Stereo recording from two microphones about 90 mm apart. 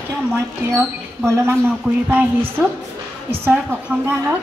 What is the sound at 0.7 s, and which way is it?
Speech, 30° right (ahead or behind).